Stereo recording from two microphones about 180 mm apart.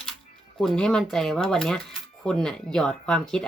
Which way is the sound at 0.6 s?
5° left (ahead or behind).